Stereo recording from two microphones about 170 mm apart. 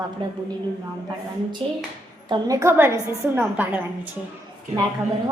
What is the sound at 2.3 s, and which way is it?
A woman's voice, 20° right (ahead or behind).